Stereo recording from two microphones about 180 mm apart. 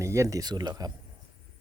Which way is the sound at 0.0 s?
15° right (ahead or behind).